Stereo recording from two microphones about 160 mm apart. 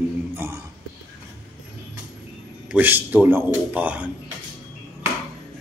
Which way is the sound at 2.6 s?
10° right (ahead or behind).